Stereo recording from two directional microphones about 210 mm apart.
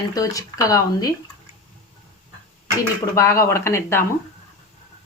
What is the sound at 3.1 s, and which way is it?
Speech, 15° left (ahead or behind).